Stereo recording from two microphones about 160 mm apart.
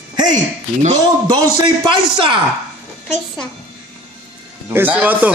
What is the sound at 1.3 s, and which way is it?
A man's voice, 30° right (ahead or behind).